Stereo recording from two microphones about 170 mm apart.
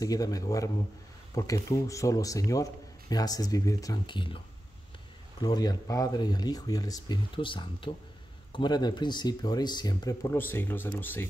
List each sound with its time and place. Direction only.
0.0 s a man's voice: 20° left (ahead or behind)
5.4 s a man's voice: 25° left (ahead or behind)